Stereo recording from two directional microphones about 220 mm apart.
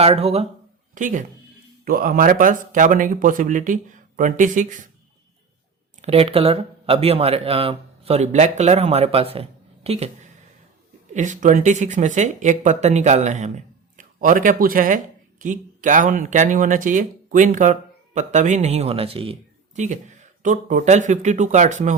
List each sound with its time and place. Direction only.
0.0 s speech: 25° right (ahead or behind)
6.0 s speech: 25° right (ahead or behind)
11.1 s speech: 35° right (ahead or behind)